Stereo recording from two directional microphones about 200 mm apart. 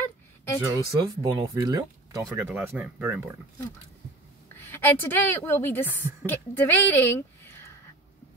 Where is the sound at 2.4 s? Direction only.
10° right (ahead or behind).